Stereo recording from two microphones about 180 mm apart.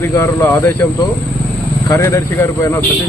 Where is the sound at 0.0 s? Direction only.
15° left (ahead or behind).